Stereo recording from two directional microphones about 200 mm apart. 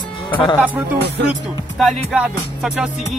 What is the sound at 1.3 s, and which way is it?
Speech, centre (ahead or behind).